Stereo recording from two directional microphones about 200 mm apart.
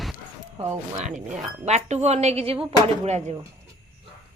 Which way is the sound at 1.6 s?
35° right (ahead or behind).